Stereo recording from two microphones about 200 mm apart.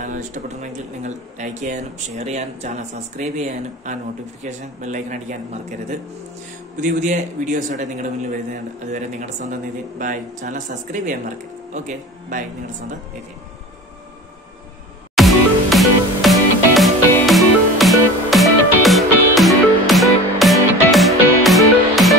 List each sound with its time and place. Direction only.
0.0 s speech: 40° right (ahead or behind)
15.1 s music: centre (ahead or behind)